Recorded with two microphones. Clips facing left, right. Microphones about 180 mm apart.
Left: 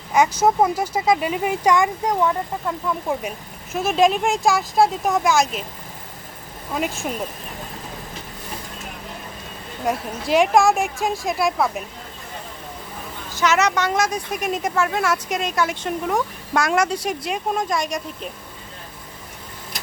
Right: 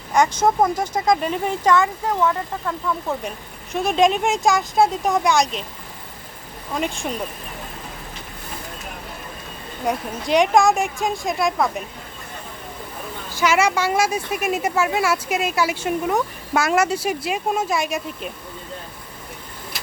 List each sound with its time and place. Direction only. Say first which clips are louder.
0.1 s speech: even; 5° left (ahead or behind)
6.7 s a woman's voice: even; 5° left (ahead or behind)
9.8 s a woman's voice: even; centre (ahead or behind)
13.3 s speech: right 1 dB; 10° right (ahead or behind)